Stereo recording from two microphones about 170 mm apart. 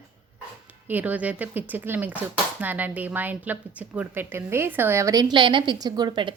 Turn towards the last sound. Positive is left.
turn(degrees=-25)  # may be behind; listen again after turning